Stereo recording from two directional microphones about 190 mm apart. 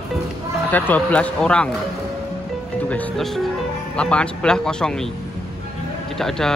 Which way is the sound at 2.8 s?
5° left (ahead or behind).